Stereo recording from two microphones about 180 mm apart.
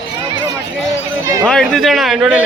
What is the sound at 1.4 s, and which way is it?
Speech, 5° left (ahead or behind).